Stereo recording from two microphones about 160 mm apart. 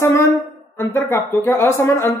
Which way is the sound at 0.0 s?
15° left (ahead or behind).